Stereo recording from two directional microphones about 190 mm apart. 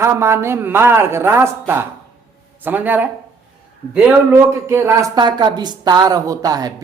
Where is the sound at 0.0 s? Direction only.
15° right (ahead or behind).